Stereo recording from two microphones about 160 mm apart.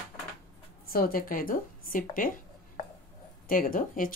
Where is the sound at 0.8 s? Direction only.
65° left (ahead or behind).